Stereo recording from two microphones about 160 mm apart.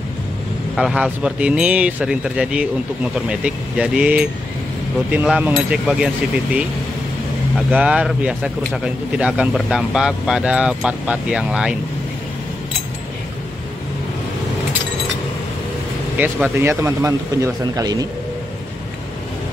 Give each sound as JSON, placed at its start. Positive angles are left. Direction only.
{"t": 0.7, "sound": "speech", "side_deg": -5}
{"t": 16.2, "sound": "speech", "side_deg": -10}